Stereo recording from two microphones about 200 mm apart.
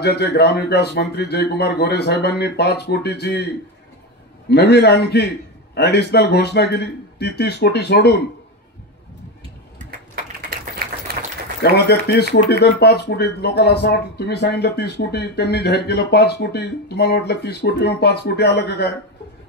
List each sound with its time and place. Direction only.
0.0 s speech: 55° left (ahead or behind)
4.5 s speech: 55° left (ahead or behind)
11.1 s applause: 50° right (ahead or behind)
11.6 s speech: 55° left (ahead or behind)